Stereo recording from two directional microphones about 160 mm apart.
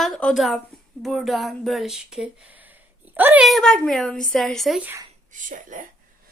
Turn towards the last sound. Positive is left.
turn(degrees=-55)  # may be behind; listen again after turning